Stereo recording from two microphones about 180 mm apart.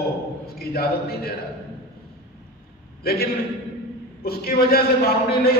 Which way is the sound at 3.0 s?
60° left (ahead or behind).